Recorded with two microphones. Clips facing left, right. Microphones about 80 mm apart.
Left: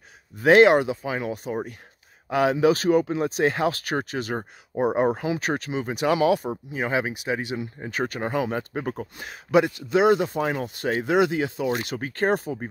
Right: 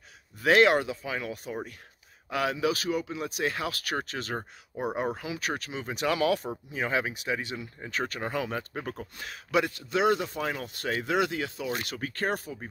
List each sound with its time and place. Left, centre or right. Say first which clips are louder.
0.4 s speech: left 6 dB; left
4.0 s speech: left 5 dB; centre
4.7 s speech: left 9 dB; left